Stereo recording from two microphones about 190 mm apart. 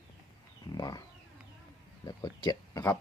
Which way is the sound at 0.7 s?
20° left (ahead or behind).